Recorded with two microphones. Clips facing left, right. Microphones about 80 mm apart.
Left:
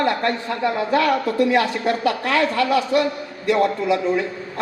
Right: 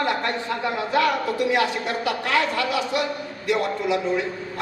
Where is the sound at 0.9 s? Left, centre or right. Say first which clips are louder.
Left 1 dB; left.